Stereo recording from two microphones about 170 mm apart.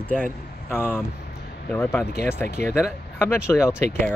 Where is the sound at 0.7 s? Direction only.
15° left (ahead or behind).